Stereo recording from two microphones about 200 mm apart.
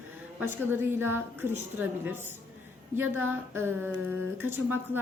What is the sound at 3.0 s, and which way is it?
A woman's voice, 10° right (ahead or behind).